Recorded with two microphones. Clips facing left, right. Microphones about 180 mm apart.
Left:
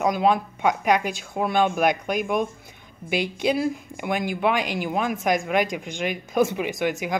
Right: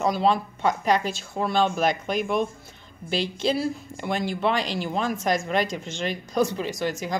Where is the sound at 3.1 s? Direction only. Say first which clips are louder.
Left 2 dB; 15° left (ahead or behind).